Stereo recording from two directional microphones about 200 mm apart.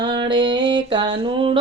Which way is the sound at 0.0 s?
20° right (ahead or behind).